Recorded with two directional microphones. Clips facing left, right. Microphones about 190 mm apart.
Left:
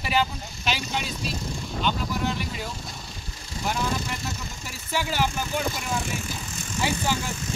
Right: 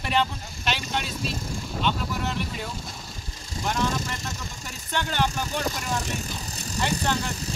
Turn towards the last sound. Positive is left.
turn(degrees=5)  # may be behind; listen again after turning